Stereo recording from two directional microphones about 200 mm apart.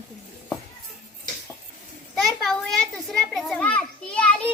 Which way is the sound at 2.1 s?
Centre (ahead or behind).